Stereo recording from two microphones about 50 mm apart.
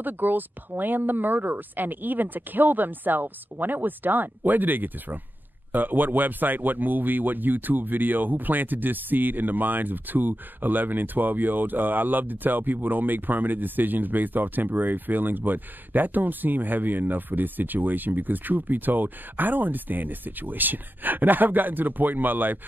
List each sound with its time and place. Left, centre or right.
0.0 s speech: right